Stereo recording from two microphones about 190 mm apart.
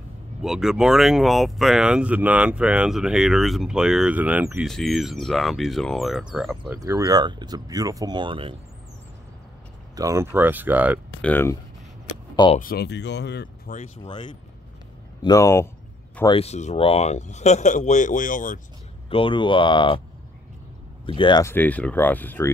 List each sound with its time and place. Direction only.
0.4 s speech: centre (ahead or behind)
6.7 s speech: 15° right (ahead or behind)
9.9 s speech: 15° right (ahead or behind)
11.1 s speech: 10° left (ahead or behind)
12.5 s speech: 55° left (ahead or behind)
13.7 s speech: 50° left (ahead or behind)
14.0 s speech: 25° left (ahead or behind)
16.3 s speech: 30° left (ahead or behind)
19.0 s speech: 30° left (ahead or behind)
21.0 s speech: 25° left (ahead or behind); by 22.5 s 10° left (ahead or behind)